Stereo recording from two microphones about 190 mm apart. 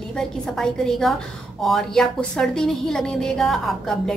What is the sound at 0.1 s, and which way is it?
A woman's voice, 5° left (ahead or behind).